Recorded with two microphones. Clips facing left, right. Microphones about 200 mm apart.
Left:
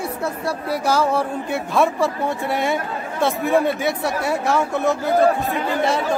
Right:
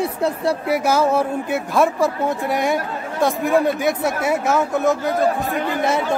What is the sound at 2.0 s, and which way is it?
Speech, 15° right (ahead or behind).